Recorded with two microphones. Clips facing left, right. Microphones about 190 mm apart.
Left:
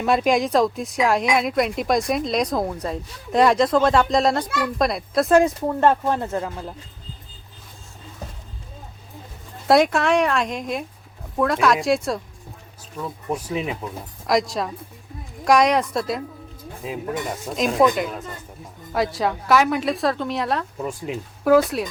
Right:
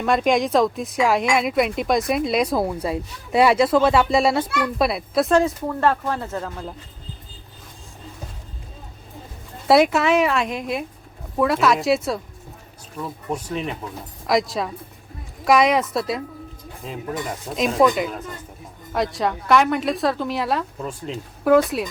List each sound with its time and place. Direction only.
0.0 s speech: centre (ahead or behind)
5.3 s speech: 15° left (ahead or behind)
9.6 s speech: centre (ahead or behind)
13.5 s speech: 10° left (ahead or behind)
14.3 s speech: centre (ahead or behind)
21.1 s speech: 10° left (ahead or behind)